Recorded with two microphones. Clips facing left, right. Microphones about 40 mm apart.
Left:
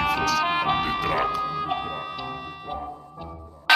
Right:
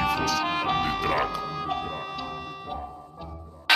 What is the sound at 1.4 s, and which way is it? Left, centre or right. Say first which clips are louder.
Music: left 3 dB; centre.